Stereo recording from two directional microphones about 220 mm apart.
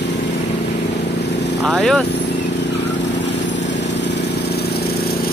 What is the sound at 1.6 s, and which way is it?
Speech, centre (ahead or behind).